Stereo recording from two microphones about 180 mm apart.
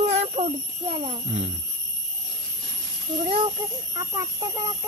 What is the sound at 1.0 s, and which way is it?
Jingle bell, 35° right (ahead or behind).